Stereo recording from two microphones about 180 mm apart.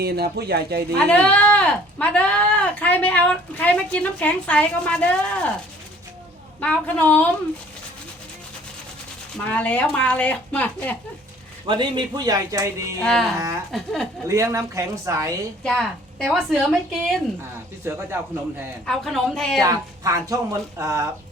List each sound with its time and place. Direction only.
0.0 s speech: 60° right (ahead or behind)
0.9 s speech: 10° left (ahead or behind)
6.6 s speech: 10° left (ahead or behind)
9.5 s speech: 10° left (ahead or behind)
11.6 s speech: 25° right (ahead or behind)
13.0 s a woman's voice: centre (ahead or behind)
14.3 s speech: 15° right (ahead or behind)
15.6 s a woman's voice: 5° left (ahead or behind)
17.8 s speech: 15° right (ahead or behind)
18.9 s a woman's voice: centre (ahead or behind)
19.6 s speech: 20° right (ahead or behind)